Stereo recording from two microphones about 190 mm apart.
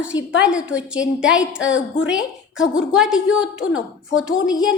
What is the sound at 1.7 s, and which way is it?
Female singing, 85° left.